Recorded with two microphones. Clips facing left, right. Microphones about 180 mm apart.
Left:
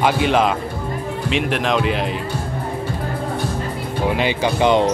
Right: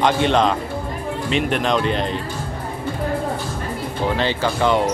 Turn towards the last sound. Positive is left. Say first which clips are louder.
# left 3 dB
turn(degrees=20)  # may be behind; listen again after turning